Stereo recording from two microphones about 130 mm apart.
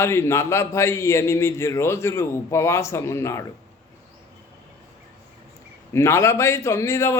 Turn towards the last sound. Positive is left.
turn(degrees=20)  # may be behind; listen again after turning